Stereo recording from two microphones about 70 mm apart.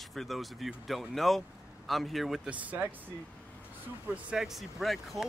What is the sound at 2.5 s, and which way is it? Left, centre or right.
Speech, right.